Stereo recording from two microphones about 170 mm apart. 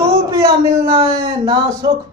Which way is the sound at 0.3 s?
20° right (ahead or behind).